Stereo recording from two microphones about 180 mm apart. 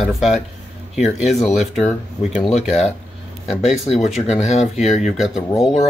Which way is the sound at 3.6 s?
35° left (ahead or behind).